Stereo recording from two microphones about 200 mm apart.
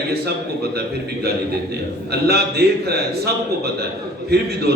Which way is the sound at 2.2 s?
55° right (ahead or behind).